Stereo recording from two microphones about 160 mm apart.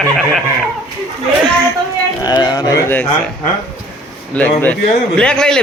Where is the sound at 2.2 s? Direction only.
25° left (ahead or behind).